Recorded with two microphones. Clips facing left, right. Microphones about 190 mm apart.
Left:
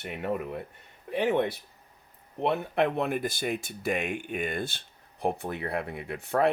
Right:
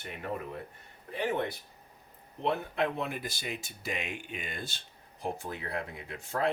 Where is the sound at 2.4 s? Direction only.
65° left (ahead or behind).